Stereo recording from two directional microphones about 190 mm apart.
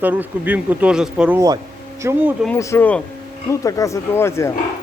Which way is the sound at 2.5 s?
10° left (ahead or behind).